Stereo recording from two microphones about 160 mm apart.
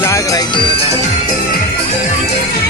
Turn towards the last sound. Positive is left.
turn(degrees=30)  # may be behind; listen again after turning